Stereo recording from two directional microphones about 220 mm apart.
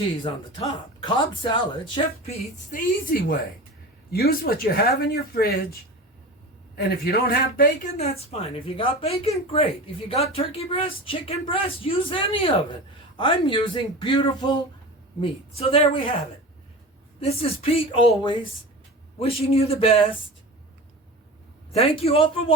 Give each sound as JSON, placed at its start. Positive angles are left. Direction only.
{"t": 0.6, "sound": "speech", "side_deg": 20}
{"t": 2.7, "sound": "a woman's voice", "side_deg": 40}
{"t": 6.7, "sound": "speech", "side_deg": 45}
{"t": 17.2, "sound": "speech", "side_deg": 25}
{"t": 21.7, "sound": "speech", "side_deg": 25}